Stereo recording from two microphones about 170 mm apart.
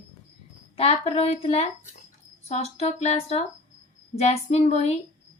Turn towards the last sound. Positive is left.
turn(degrees=40)  # may be behind; listen again after turning